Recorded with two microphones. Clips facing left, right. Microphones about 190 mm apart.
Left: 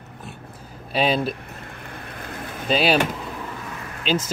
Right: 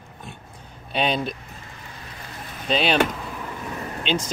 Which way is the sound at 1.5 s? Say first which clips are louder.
Left 4 dB; 60° left (ahead or behind).